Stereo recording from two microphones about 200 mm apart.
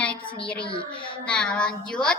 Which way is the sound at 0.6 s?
25° left (ahead or behind).